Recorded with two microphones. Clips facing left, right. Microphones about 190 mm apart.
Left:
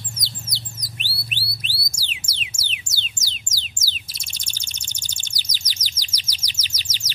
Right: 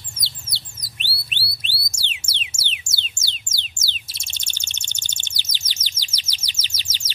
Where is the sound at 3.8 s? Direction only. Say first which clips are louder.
Even; 25° right (ahead or behind).